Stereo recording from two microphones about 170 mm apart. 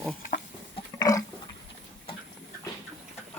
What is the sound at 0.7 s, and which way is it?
Roaring cats, 20° left (ahead or behind).